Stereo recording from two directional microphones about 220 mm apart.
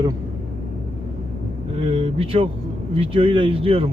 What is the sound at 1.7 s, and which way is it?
Speech, 25° right (ahead or behind).